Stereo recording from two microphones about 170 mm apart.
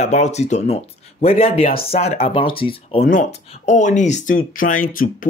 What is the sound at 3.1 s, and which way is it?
Speech, 45° left (ahead or behind).